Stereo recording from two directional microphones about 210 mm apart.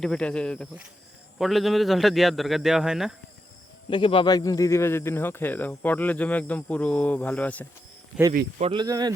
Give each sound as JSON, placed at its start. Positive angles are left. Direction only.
{"t": 0.0, "sound": "a man's voice", "side_deg": 5}
{"t": 3.8, "sound": "speech", "side_deg": 25}
{"t": 8.3, "sound": "speech", "side_deg": -40}
{"t": 8.7, "sound": "speech", "side_deg": -20}